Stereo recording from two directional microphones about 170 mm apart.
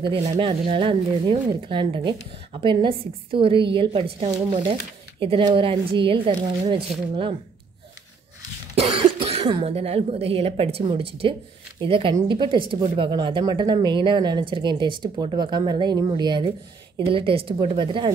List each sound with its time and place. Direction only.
0.2 s a woman's voice: 30° right (ahead or behind)
8.8 s a woman's voice: 35° right (ahead or behind)